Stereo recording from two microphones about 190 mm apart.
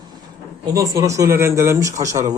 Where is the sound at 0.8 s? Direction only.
15° right (ahead or behind).